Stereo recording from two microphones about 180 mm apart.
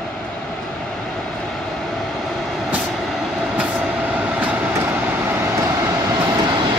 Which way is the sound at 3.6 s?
5° right (ahead or behind).